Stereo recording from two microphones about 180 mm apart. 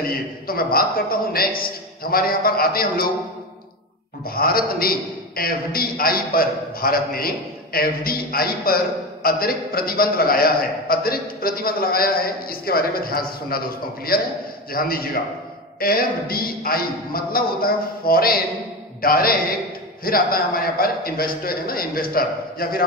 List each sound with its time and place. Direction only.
0.1 s a man's voice: 55° left (ahead or behind)
4.3 s a man's voice: 55° left (ahead or behind)